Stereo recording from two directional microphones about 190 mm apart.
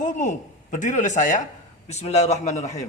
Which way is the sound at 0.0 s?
40° left (ahead or behind).